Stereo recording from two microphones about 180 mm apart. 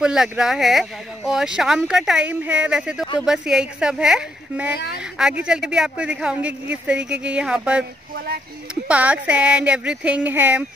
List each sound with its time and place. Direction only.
0.0 s speech: 5° right (ahead or behind)
4.7 s speech: 60° left (ahead or behind)
5.4 s speech: 5° right (ahead or behind)
8.8 s speech: 5° right (ahead or behind)